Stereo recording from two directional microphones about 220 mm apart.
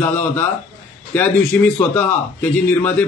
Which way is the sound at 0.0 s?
5° left (ahead or behind).